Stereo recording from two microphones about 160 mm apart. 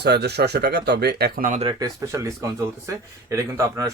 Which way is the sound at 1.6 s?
25° right (ahead or behind).